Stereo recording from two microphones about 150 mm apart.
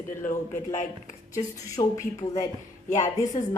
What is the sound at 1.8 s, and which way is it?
Speech, 35° left (ahead or behind).